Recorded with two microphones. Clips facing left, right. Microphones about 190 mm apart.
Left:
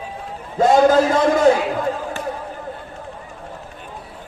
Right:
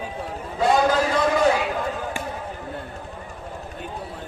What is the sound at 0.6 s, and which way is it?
Speech, 45° left (ahead or behind).